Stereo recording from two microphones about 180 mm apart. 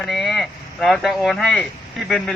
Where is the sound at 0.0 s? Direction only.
5° left (ahead or behind).